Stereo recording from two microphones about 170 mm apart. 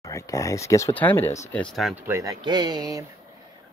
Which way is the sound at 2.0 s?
20° right (ahead or behind).